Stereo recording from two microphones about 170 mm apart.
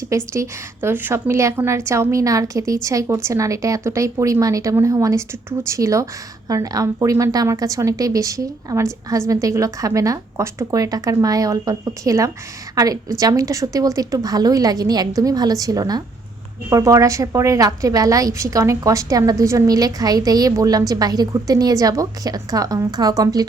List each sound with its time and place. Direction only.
0.3 s a woman's voice: 15° right (ahead or behind)